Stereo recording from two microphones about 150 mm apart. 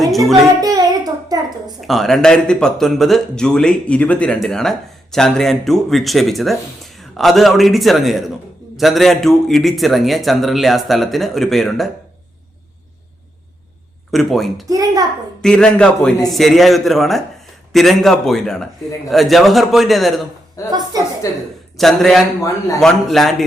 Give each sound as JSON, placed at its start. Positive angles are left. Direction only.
{"t": 0.6, "sound": "a sound", "side_deg": -25}
{"t": 1.9, "sound": "speech", "side_deg": 0}
{"t": 14.1, "sound": "speech", "side_deg": 0}
{"t": 14.7, "sound": "a woman's voice", "side_deg": -25}
{"t": 15.4, "sound": "speech", "side_deg": 5}
{"t": 20.7, "sound": "a woman's voice", "side_deg": -25}
{"t": 21.2, "sound": "a woman's voice", "side_deg": 20}
{"t": 21.8, "sound": "speech", "side_deg": 0}